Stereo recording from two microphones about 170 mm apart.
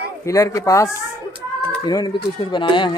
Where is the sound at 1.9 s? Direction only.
25° left (ahead or behind).